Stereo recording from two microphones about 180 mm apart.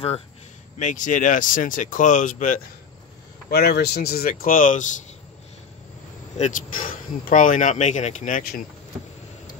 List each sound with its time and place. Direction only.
0.7 s speech: 45° left (ahead or behind)
3.4 s speech: 60° left (ahead or behind); by 5.0 s 45° left (ahead or behind)
6.3 s speech: 45° left (ahead or behind)